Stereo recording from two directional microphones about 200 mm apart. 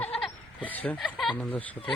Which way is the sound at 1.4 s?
5° left (ahead or behind).